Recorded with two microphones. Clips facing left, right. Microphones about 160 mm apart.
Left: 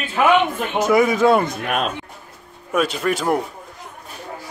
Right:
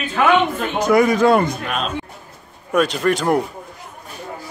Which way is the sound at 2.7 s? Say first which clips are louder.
Right 3 dB; 5° left (ahead or behind).